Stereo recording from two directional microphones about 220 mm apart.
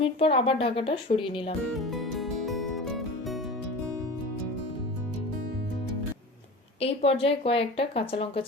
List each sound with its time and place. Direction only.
0.0 s speech: 25° left (ahead or behind)
1.8 s music: centre (ahead or behind)
6.7 s speech: 25° left (ahead or behind)